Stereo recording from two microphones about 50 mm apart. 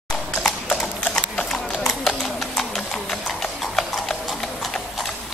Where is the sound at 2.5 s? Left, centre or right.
Centre.